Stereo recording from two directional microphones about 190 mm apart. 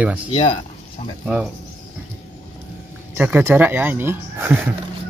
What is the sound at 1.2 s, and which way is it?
Speech, 5° right (ahead or behind).